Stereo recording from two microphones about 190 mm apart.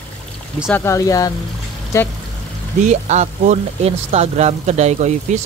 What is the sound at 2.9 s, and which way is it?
Speech, 40° right (ahead or behind).